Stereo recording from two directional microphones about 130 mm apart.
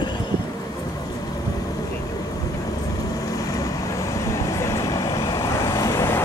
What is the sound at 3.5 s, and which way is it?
Vehicle, 25° left (ahead or behind).